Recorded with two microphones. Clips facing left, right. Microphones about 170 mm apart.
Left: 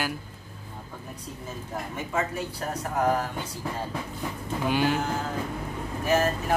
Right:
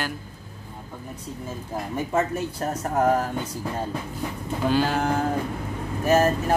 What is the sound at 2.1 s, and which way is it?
Speech, 45° right (ahead or behind).